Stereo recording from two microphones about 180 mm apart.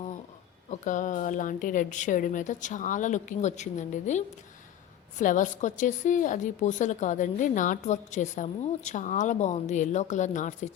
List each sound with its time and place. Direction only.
0.7 s a woman's voice: 45° left (ahead or behind)